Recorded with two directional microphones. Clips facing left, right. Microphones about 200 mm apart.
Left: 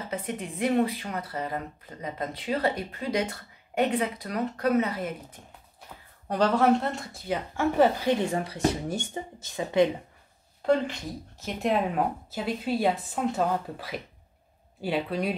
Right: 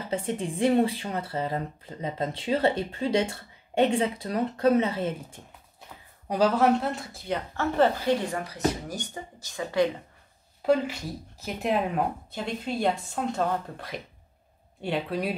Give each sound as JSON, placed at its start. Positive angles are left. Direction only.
{"t": 0.1, "sound": "speech", "side_deg": -30}
{"t": 6.2, "sound": "speech", "side_deg": -5}
{"t": 8.3, "sound": "speech", "side_deg": 25}
{"t": 10.6, "sound": "speech", "side_deg": -5}